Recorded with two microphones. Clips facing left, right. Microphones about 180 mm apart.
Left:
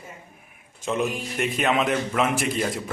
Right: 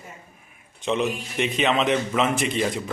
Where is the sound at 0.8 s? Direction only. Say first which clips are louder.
Right 1 dB; centre (ahead or behind).